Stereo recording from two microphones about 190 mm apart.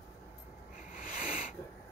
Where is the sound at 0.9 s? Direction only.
45° left (ahead or behind).